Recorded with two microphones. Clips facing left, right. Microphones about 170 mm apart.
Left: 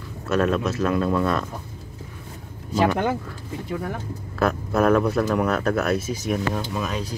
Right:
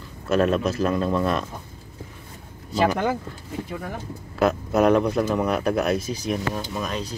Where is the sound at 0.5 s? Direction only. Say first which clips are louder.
Right 1 dB; centre (ahead or behind).